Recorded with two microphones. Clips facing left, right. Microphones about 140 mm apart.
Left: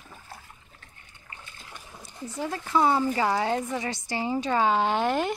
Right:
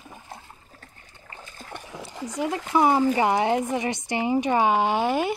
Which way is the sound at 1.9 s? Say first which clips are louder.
Right 4 dB; 90° right.